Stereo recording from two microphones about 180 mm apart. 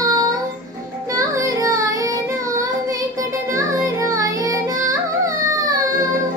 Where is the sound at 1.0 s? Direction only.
20° right (ahead or behind).